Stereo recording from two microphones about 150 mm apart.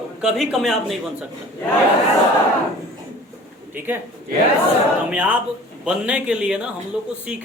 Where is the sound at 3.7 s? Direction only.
15° right (ahead or behind).